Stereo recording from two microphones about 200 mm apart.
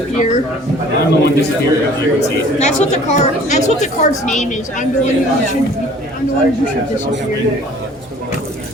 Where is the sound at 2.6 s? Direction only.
35° left (ahead or behind).